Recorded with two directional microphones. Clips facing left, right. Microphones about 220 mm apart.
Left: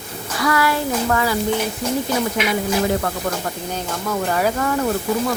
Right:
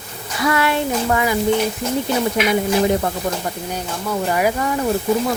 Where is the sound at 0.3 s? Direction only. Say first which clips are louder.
Right 1 dB; 25° right (ahead or behind).